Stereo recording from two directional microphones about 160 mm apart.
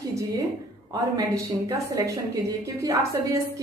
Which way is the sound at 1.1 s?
20° right (ahead or behind).